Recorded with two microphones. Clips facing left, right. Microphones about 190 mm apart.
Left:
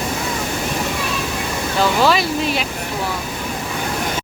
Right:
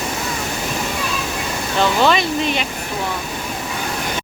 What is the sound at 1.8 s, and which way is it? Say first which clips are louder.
Speech: even; 5° left (ahead or behind).